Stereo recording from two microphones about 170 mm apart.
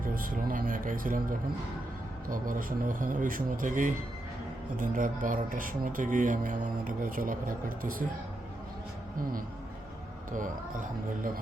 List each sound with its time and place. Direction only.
0.0 s speech: 55° right (ahead or behind)
10.3 s speech: 50° right (ahead or behind)